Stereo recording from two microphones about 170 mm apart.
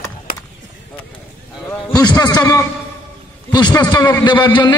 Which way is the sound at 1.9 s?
25° left (ahead or behind).